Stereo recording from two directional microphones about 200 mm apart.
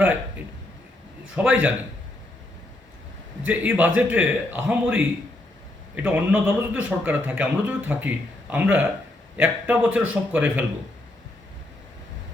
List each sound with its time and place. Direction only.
1.4 s a man's voice: 10° right (ahead or behind)
3.4 s a man's voice: 10° right (ahead or behind)